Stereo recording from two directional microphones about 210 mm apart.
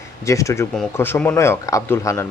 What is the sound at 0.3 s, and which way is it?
Speech, 15° left (ahead or behind).